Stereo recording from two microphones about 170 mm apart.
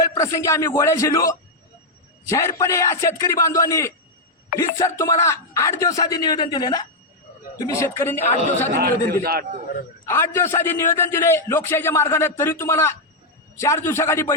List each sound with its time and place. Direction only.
0.1 s a man's voice: 20° left (ahead or behind)
8.7 s a man's voice: 65° right (ahead or behind)
10.1 s a man's voice: 15° left (ahead or behind)